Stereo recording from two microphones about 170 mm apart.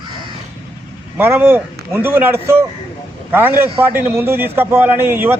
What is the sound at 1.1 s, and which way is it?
A man's voice, 10° right (ahead or behind).